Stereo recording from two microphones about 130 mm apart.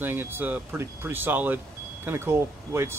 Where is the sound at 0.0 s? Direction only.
15° right (ahead or behind).